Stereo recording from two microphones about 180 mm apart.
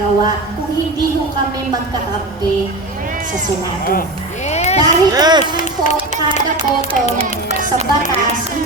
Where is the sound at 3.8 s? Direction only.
55° left (ahead or behind).